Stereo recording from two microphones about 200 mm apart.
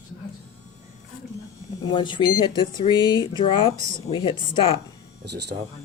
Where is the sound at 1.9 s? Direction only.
25° left (ahead or behind).